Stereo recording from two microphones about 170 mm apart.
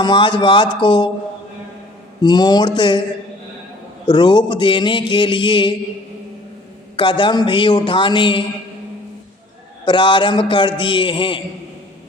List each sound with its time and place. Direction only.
0.0 s a man's voice: 25° left (ahead or behind)
2.2 s a man's voice: 25° left (ahead or behind)
4.0 s a man's voice: 25° left (ahead or behind)
6.9 s a man's voice: 30° left (ahead or behind)
9.8 s a man's voice: 30° left (ahead or behind)